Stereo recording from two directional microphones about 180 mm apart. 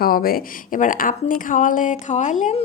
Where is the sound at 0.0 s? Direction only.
55° left (ahead or behind).